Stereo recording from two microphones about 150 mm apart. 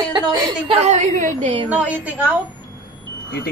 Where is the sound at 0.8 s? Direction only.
50° right (ahead or behind).